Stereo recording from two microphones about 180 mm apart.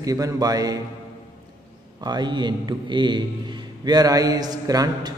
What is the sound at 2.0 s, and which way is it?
A man's voice, 25° right (ahead or behind).